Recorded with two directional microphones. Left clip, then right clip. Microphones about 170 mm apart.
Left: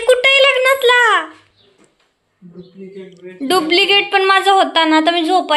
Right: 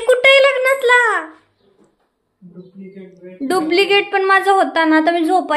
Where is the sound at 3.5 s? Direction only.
20° right (ahead or behind).